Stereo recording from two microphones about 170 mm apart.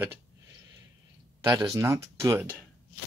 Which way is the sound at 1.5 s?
20° right (ahead or behind).